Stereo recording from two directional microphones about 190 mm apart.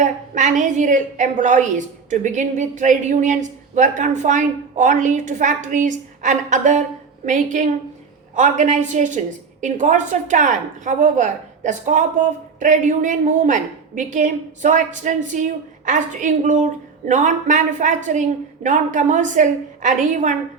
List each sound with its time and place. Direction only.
0.0 s a woman's voice: 40° right (ahead or behind)
8.4 s a woman's voice: 40° right (ahead or behind)